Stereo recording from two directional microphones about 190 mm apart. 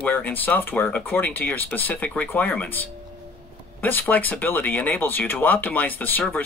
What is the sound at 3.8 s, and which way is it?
Speech, 10° left (ahead or behind).